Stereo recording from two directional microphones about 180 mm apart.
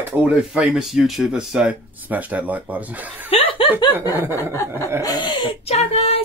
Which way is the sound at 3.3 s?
30° left (ahead or behind).